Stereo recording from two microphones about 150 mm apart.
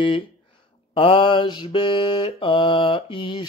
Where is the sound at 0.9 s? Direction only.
35° left (ahead or behind).